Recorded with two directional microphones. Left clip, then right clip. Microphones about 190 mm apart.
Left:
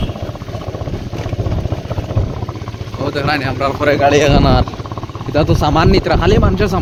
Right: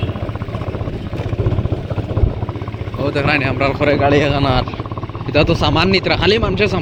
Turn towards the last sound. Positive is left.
turn(degrees=40)  # may be behind; listen again after turning